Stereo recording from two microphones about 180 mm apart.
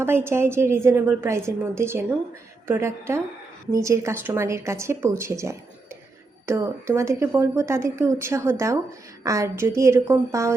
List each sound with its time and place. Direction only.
0.0 s speech: 15° right (ahead or behind)